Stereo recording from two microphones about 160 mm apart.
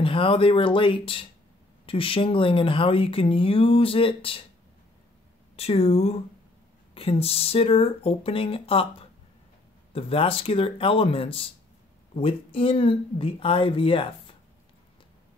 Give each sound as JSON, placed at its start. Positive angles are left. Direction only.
{"t": 0.0, "sound": "speech", "side_deg": 35}
{"t": 5.6, "sound": "speech", "side_deg": 40}
{"t": 9.9, "sound": "speech", "side_deg": 35}